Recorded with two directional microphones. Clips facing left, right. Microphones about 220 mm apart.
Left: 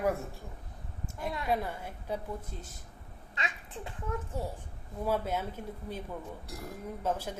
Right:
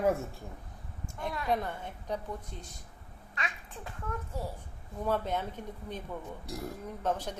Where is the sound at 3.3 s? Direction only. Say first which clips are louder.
Left 1 dB; 25° left (ahead or behind).